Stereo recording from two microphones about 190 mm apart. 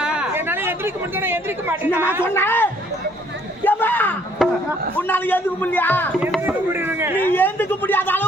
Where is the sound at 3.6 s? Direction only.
10° left (ahead or behind).